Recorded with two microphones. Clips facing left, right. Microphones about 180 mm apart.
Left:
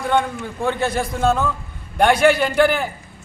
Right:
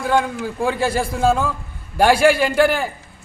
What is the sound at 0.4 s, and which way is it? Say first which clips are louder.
A man's voice: right 1 dB; centre (ahead or behind).